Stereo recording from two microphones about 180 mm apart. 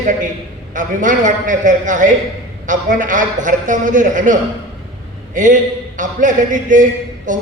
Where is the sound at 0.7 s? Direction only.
45° right (ahead or behind).